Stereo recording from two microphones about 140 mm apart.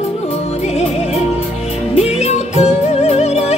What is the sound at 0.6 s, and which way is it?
Music, 50° left (ahead or behind).